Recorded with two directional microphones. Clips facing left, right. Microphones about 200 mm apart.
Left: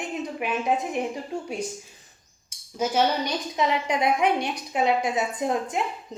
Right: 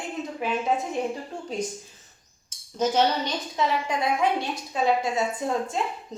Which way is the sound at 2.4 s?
10° left (ahead or behind).